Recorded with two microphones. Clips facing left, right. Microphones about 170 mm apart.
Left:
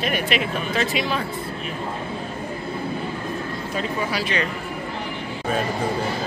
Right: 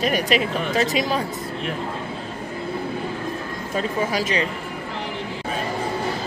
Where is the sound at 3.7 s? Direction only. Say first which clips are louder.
Right 3 dB; 45° right (ahead or behind).